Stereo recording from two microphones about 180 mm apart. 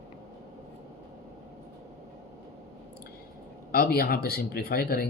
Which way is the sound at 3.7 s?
55° left (ahead or behind).